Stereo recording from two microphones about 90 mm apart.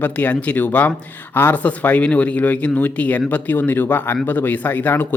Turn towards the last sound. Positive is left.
turn(degrees=20)  # may be behind; listen again after turning